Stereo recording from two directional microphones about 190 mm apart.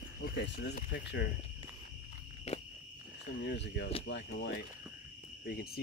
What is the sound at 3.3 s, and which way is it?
Speech, 65° left (ahead or behind).